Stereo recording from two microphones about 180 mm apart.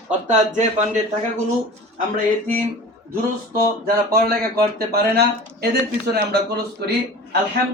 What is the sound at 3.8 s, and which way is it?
Speech, 55° right (ahead or behind).